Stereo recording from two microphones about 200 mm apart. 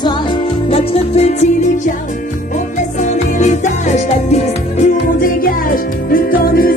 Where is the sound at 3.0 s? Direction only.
35° left (ahead or behind).